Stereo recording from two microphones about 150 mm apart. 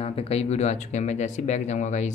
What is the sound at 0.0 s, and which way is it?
Speech, 40° left (ahead or behind).